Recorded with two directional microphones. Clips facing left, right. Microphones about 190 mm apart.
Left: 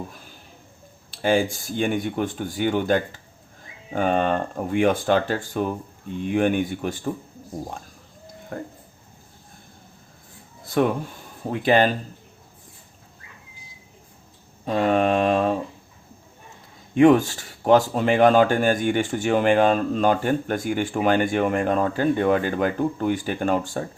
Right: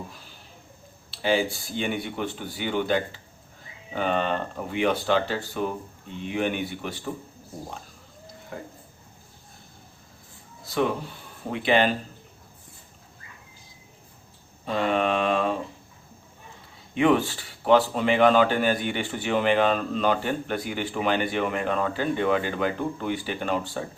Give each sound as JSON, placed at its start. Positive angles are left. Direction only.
{"t": 1.1, "sound": "speech", "side_deg": 45}
{"t": 8.5, "sound": "speech", "side_deg": 50}
{"t": 10.7, "sound": "speech", "side_deg": 50}
{"t": 14.6, "sound": "speech", "side_deg": 45}
{"t": 16.9, "sound": "speech", "side_deg": 45}